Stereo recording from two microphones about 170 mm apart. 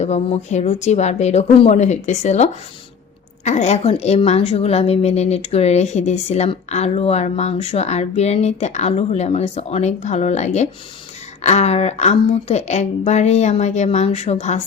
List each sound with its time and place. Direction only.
0.0 s a woman's voice: 40° left (ahead or behind)